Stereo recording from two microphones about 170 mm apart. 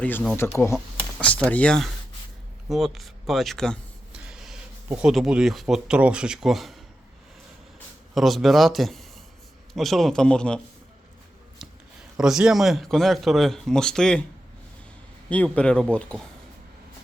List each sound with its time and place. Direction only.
0.0 s a man's voice: 10° left (ahead or behind)
2.6 s a sound: centre (ahead or behind)
4.9 s a man's voice: 5° right (ahead or behind)
8.1 s a man's voice: centre (ahead or behind)
12.1 s a man's voice: 5° right (ahead or behind)
15.3 s a man's voice: 10° left (ahead or behind)